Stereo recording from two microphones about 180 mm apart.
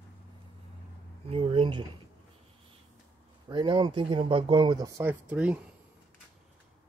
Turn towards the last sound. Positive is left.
turn(degrees=-10)  # may be behind; listen again after turning